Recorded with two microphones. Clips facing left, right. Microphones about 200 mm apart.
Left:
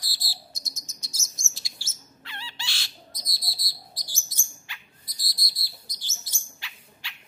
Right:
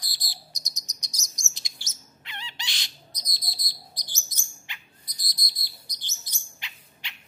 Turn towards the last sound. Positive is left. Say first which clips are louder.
# even
turn(degrees=-20)  # may be behind; listen again after turning